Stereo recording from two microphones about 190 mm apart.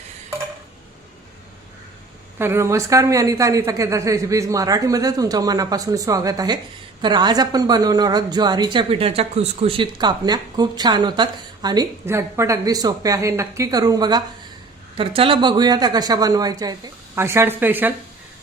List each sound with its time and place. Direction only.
2.4 s a woman's voice: 15° right (ahead or behind)